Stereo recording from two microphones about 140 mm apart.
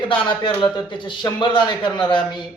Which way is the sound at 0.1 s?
35° left (ahead or behind).